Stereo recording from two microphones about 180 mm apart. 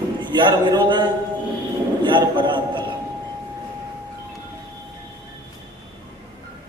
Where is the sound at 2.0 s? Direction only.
25° right (ahead or behind).